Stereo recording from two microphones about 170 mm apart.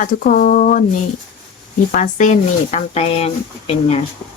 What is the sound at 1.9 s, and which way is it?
Speech, 50° left (ahead or behind).